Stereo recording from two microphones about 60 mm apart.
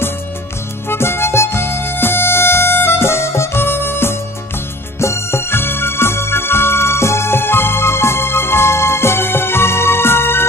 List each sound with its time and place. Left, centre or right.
0.8 s music: left